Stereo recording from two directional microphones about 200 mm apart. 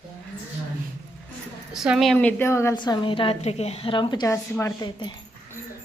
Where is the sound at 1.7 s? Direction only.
Centre (ahead or behind); by 5.6 s 20° left (ahead or behind).